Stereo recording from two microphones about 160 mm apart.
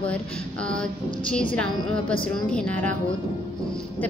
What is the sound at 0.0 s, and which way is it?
Speech, 5° left (ahead or behind).